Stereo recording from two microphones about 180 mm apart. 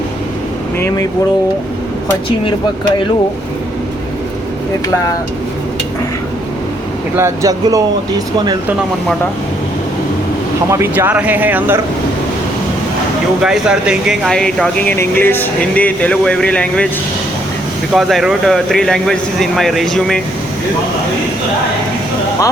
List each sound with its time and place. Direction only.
7.2 s speech: 15° right (ahead or behind)
10.7 s speech: 15° right (ahead or behind)
13.4 s speech: 5° right (ahead or behind)
17.9 s speech: centre (ahead or behind)